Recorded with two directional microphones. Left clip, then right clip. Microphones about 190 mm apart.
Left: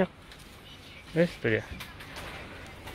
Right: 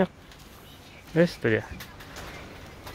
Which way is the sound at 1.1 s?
20° right (ahead or behind).